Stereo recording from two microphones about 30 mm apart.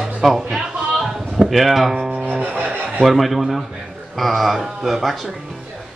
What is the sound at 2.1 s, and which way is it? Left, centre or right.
Music, right.